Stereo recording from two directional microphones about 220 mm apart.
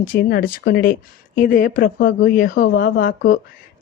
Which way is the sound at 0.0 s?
40° left (ahead or behind).